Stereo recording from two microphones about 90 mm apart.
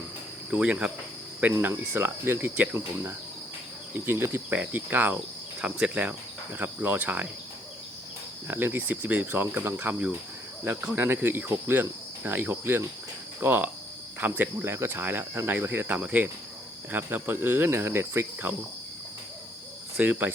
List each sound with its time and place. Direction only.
0.5 s cricket: 15° right (ahead or behind)
8.4 s cricket: 25° right (ahead or behind)
20.0 s cricket: 20° right (ahead or behind)